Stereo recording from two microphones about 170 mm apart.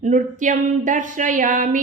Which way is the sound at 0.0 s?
50° right (ahead or behind).